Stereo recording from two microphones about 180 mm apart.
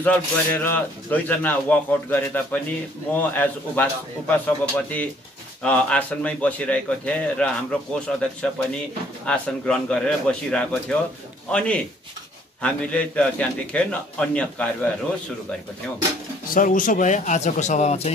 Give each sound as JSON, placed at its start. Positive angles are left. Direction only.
{"t": 0.0, "sound": "a man's voice", "side_deg": 10}
{"t": 16.5, "sound": "a man's voice", "side_deg": 50}